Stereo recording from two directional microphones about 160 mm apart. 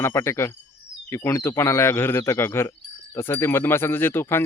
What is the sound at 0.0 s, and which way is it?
Speech, 15° left (ahead or behind).